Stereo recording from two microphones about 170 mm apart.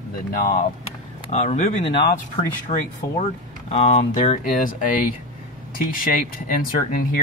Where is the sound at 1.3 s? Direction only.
40° left (ahead or behind).